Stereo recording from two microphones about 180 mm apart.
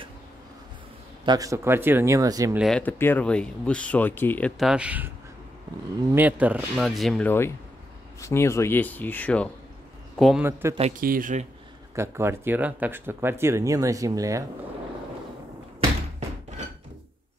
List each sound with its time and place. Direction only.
1.2 s speech: 20° right (ahead or behind)
2.5 s speech: centre (ahead or behind)
2.8 s speech: 10° left (ahead or behind); by 5.1 s 10° right (ahead or behind)
6.1 s speech: 10° right (ahead or behind)
6.8 s a man's voice: centre (ahead or behind)
10.6 s speech: 15° right (ahead or behind)
11.0 s speech: 50° right (ahead or behind)
11.9 s speech: 15° right (ahead or behind)
16.2 s a sound: 40° right (ahead or behind)